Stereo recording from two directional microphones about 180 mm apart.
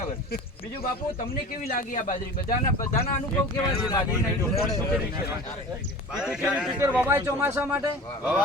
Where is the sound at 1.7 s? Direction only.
45° left (ahead or behind).